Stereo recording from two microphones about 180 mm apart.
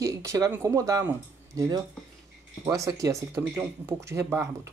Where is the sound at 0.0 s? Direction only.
15° right (ahead or behind).